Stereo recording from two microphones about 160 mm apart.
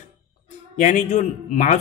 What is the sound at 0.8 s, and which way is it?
A man's voice, 50° left (ahead or behind).